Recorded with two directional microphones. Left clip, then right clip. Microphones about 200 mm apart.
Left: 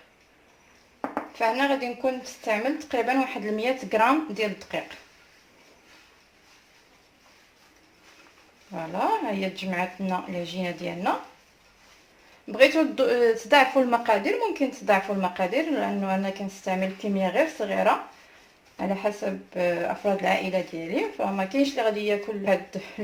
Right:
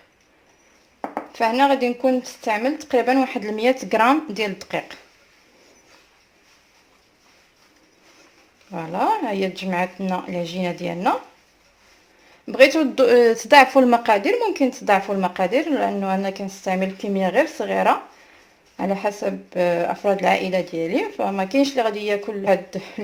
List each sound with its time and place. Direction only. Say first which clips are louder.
1.3 s speech: right 7 dB; 50° right (ahead or behind)
8.7 s speech: right 5 dB; 50° right (ahead or behind)
12.5 s speech: right 5 dB; 50° right (ahead or behind)